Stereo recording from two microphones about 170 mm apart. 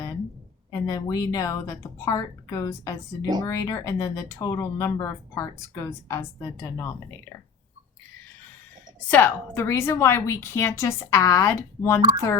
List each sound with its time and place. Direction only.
0.7 s a woman's voice: 20° left (ahead or behind)
9.0 s speech: 10° left (ahead or behind)